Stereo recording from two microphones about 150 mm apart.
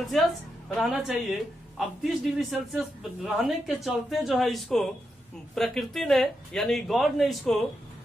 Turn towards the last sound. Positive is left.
turn(degrees=0)  # may be behind; listen again after turning